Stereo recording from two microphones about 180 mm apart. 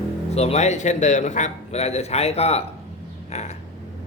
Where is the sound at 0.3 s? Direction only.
35° left (ahead or behind).